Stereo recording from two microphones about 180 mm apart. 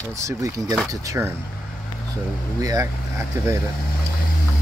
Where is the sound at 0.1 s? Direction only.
15° right (ahead or behind).